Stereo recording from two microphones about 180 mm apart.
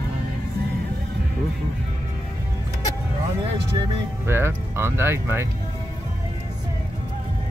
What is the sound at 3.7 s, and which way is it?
Music, 15° right (ahead or behind).